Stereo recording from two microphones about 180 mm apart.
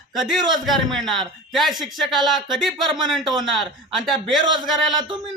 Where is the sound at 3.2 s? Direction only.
25° right (ahead or behind).